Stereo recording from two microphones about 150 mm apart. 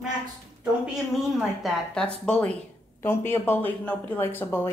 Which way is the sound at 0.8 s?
Centre (ahead or behind).